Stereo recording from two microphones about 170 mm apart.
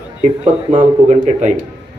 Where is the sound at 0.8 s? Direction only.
45° right (ahead or behind).